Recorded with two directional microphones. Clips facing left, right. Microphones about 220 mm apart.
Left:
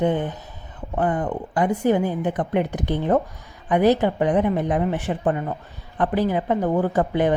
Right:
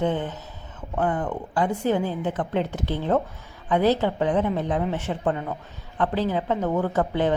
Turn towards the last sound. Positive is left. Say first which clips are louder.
# left 3 dB
turn(degrees=10)  # may be behind; listen again after turning